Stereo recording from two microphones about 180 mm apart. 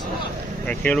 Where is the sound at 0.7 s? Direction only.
5° left (ahead or behind).